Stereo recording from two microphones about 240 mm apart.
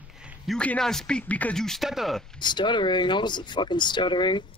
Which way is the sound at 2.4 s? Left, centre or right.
Centre.